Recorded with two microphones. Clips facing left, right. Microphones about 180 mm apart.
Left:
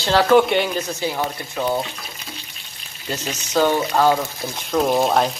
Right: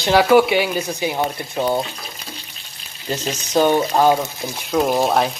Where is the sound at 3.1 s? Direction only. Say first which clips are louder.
Right 3 dB; 20° right (ahead or behind).